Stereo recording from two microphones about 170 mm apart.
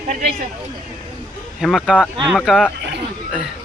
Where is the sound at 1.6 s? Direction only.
Centre (ahead or behind).